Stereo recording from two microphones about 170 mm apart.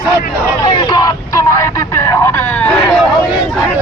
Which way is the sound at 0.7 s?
25° left (ahead or behind).